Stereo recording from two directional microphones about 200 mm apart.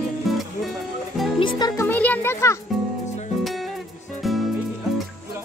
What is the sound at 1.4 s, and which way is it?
Music, 20° left (ahead or behind).